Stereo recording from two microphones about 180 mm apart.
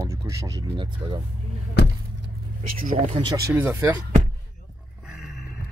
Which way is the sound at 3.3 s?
15° right (ahead or behind).